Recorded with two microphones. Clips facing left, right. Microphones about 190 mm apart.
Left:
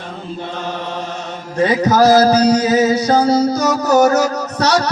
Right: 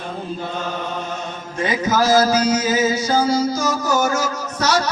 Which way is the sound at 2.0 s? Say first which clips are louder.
Left 5 dB; 65° left (ahead or behind).